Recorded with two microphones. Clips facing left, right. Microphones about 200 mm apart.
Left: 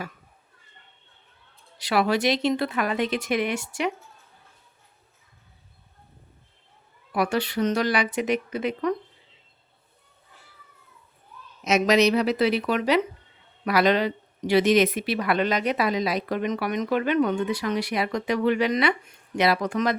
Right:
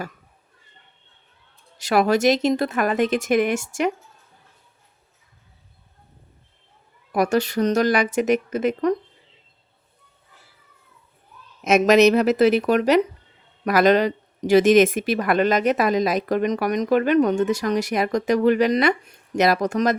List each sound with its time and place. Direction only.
1.8 s speech: 45° right (ahead or behind)
7.1 s speech: 45° right (ahead or behind)
11.6 s speech: 50° right (ahead or behind)